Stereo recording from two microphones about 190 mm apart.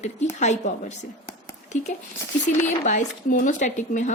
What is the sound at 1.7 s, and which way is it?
A woman's voice, 40° left (ahead or behind).